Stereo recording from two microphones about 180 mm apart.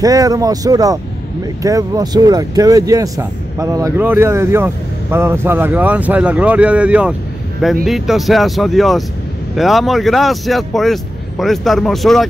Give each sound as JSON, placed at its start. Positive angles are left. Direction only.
{"t": 0.0, "sound": "speech", "side_deg": -20}